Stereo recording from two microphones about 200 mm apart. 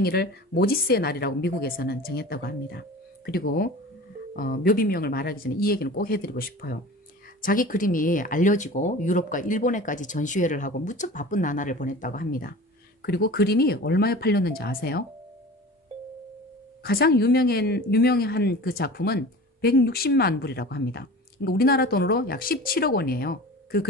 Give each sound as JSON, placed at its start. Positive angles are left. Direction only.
{"t": 0.0, "sound": "speech", "side_deg": 50}
{"t": 16.8, "sound": "speech", "side_deg": 50}